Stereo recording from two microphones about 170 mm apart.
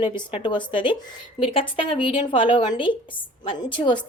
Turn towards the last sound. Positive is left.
turn(degrees=25)  # may be behind; listen again after turning